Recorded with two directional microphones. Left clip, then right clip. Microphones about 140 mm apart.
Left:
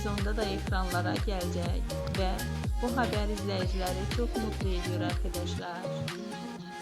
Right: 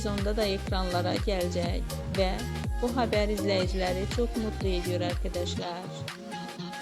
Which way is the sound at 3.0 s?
35° right (ahead or behind).